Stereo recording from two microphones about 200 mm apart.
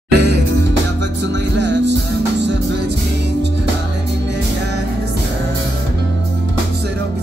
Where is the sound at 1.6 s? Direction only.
60° right (ahead or behind).